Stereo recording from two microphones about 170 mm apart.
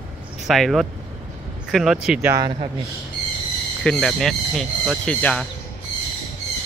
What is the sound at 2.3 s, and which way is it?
Speech, 25° right (ahead or behind).